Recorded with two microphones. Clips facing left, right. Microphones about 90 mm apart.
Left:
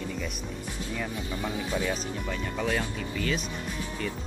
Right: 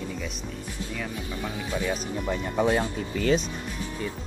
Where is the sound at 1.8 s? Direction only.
20° right (ahead or behind).